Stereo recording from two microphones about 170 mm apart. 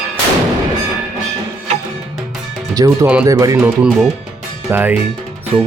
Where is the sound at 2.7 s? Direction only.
20° right (ahead or behind).